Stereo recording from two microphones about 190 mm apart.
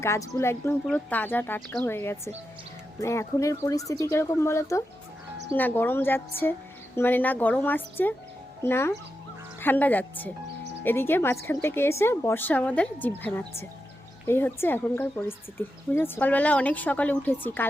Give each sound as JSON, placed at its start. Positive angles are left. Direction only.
{"t": 0.0, "sound": "speech", "side_deg": 15}